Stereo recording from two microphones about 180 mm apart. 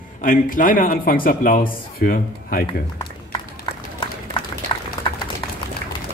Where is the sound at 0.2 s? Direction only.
50° left (ahead or behind).